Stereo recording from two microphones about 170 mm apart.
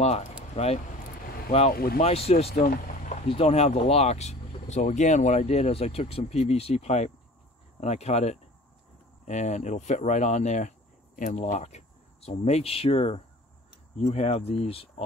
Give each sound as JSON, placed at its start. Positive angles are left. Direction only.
{"t": 0.0, "sound": "speech", "side_deg": 40}
{"t": 1.7, "sound": "speech", "side_deg": 60}
{"t": 2.0, "sound": "speech", "side_deg": 35}
{"t": 2.5, "sound": "a sound", "side_deg": 55}
{"t": 3.3, "sound": "speech", "side_deg": 35}